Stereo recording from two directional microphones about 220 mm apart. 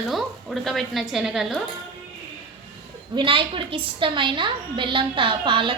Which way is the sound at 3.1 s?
25° right (ahead or behind).